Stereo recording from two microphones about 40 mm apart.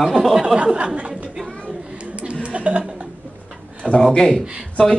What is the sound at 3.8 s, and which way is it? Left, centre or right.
Speech, left.